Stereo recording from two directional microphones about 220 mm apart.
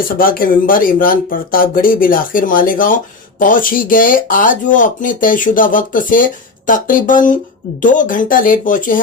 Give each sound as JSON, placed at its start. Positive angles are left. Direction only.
{"t": 0.2, "sound": "speech", "side_deg": 40}